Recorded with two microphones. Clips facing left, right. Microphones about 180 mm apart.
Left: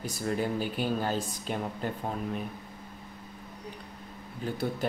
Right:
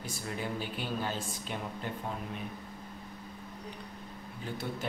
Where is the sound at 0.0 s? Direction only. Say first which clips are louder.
Left 7 dB; 40° left (ahead or behind).